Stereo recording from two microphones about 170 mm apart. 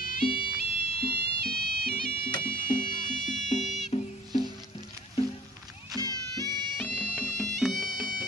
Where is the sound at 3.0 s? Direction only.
45° left (ahead or behind).